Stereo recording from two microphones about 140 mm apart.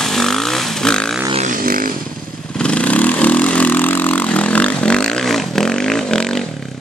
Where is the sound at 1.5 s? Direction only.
90° right.